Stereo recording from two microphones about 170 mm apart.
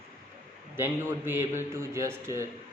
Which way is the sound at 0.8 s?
15° right (ahead or behind).